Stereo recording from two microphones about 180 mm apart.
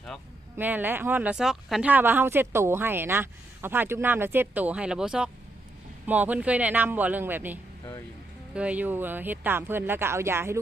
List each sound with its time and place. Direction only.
0.5 s speech: 10° right (ahead or behind)